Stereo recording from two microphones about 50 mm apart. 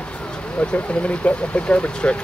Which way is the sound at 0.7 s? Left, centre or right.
Left.